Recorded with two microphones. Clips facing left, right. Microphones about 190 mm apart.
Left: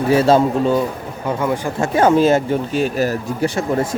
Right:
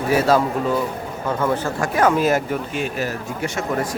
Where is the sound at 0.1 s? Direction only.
25° left (ahead or behind).